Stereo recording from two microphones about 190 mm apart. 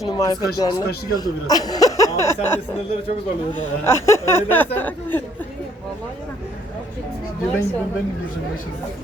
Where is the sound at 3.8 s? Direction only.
15° left (ahead or behind).